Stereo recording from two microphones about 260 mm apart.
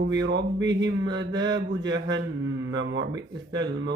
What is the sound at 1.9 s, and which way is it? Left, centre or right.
A man's voice, right.